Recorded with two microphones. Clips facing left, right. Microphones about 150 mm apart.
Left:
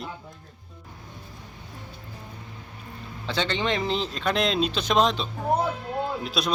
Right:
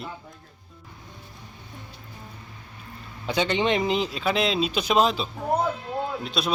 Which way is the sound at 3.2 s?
15° right (ahead or behind).